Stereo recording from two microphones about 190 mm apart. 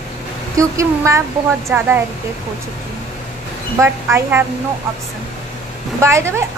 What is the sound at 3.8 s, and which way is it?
Speech, 15° right (ahead or behind).